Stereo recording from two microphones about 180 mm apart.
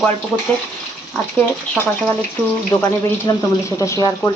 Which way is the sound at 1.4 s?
10° left (ahead or behind).